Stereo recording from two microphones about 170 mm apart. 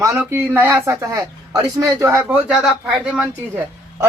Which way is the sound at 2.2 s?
5° right (ahead or behind).